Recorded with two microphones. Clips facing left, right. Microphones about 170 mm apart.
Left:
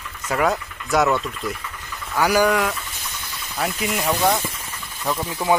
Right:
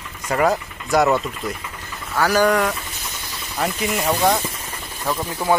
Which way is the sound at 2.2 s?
10° left (ahead or behind).